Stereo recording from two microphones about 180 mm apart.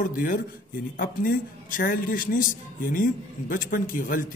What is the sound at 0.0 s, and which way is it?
Speech, 50° left (ahead or behind).